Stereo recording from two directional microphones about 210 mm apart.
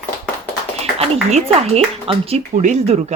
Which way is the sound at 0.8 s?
30° right (ahead or behind).